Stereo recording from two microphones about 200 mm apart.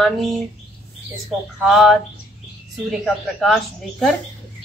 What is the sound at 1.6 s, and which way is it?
A woman's voice, centre (ahead or behind).